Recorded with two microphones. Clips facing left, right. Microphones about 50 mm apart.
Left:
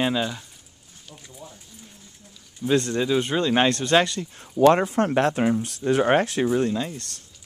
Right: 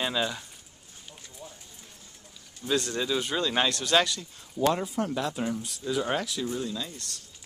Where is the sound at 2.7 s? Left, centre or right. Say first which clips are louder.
Left 6 dB; left.